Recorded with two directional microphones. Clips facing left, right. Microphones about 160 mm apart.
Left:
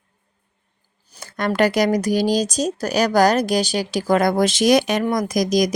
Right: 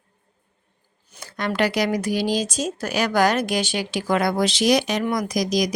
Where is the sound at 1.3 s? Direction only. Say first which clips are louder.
Left 4 dB; 45° left (ahead or behind).